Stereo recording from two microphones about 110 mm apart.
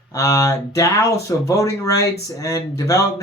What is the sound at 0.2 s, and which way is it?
Speech, 30° left (ahead or behind).